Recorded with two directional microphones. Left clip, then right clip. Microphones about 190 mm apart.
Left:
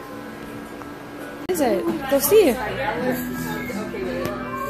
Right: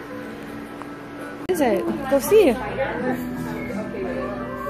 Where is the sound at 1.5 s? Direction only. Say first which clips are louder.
Right 1 dB; 5° right (ahead or behind).